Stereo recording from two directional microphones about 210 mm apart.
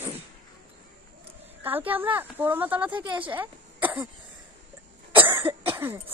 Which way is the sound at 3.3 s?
10° right (ahead or behind).